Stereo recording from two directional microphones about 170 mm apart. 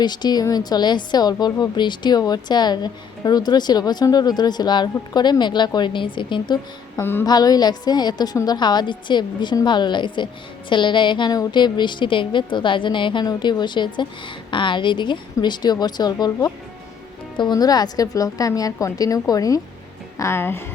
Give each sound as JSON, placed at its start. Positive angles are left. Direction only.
{"t": 0.0, "sound": "a woman's voice", "side_deg": 25}
{"t": 7.0, "sound": "speech", "side_deg": 10}
{"t": 7.3, "sound": "a woman's voice", "side_deg": 25}